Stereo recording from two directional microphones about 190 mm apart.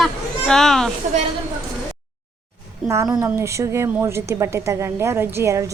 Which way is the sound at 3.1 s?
15° right (ahead or behind).